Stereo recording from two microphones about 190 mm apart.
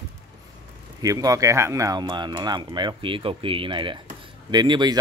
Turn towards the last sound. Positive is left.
turn(degrees=-25)  # may be behind; listen again after turning